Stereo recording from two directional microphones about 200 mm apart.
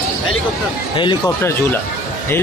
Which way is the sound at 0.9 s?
25° left (ahead or behind).